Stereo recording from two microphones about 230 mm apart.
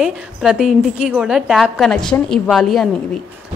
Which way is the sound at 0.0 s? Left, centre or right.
Centre.